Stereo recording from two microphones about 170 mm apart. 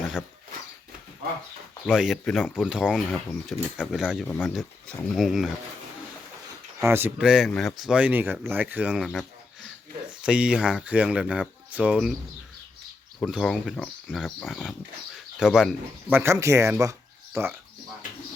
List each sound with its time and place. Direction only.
1.9 s speech: centre (ahead or behind)
2.6 s speech: 5° right (ahead or behind)
4.3 s speech: 10° left (ahead or behind)
6.7 s speech: 15° right (ahead or behind)
10.2 s speech: 5° right (ahead or behind)
13.1 s speech: centre (ahead or behind)